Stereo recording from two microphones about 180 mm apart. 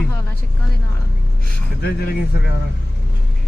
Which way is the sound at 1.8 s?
60° left (ahead or behind).